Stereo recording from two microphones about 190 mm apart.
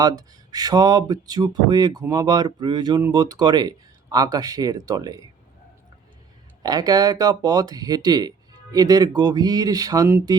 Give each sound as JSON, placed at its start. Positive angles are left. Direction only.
{"t": 0.0, "sound": "speech", "side_deg": -20}
{"t": 6.6, "sound": "speech", "side_deg": -20}